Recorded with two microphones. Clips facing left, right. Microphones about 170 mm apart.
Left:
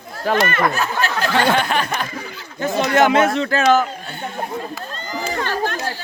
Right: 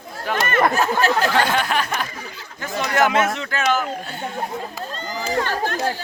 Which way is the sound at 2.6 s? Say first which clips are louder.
Left 4 dB; 25° left (ahead or behind).